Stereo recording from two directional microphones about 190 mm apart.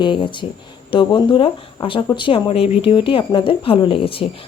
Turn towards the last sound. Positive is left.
turn(degrees=30)  # may be behind; listen again after turning